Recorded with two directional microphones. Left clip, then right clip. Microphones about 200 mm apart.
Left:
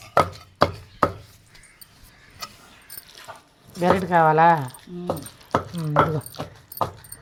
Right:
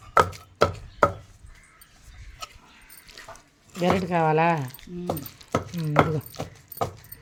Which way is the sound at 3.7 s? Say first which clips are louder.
Left 5 dB; 10° right (ahead or behind).